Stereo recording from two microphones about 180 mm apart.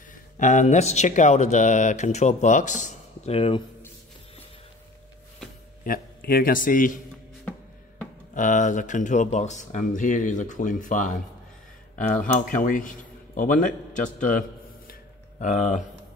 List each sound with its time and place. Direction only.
0.4 s speech: 40° left (ahead or behind)
5.9 s speech: 55° left (ahead or behind)
8.4 s speech: 45° left (ahead or behind)
14.9 s a sound: 45° left (ahead or behind)